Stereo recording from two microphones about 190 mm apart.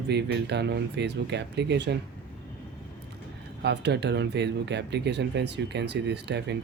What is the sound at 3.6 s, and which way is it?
Speech, 60° right (ahead or behind).